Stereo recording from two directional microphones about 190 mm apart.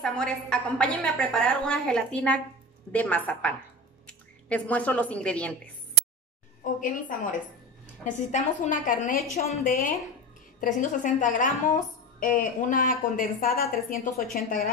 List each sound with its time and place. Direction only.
0.0 s a woman's voice: 5° left (ahead or behind)
6.6 s a woman's voice: 45° left (ahead or behind)